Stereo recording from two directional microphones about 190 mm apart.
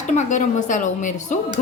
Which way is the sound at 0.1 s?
40° left (ahead or behind).